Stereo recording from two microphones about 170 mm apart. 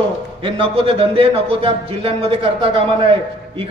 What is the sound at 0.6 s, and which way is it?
A man's voice, 30° right (ahead or behind).